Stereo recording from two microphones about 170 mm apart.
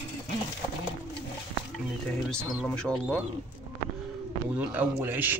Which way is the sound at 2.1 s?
5° left (ahead or behind).